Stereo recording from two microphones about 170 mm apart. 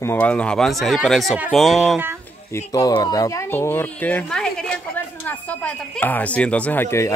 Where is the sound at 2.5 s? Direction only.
20° left (ahead or behind).